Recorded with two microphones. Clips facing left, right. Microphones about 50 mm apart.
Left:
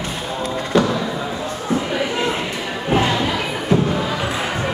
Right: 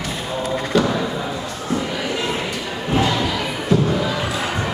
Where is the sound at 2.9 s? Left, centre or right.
Left.